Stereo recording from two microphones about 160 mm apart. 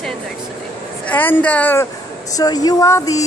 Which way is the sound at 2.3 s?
25° left (ahead or behind).